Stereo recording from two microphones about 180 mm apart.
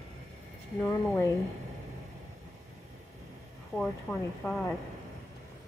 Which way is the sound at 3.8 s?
5° left (ahead or behind).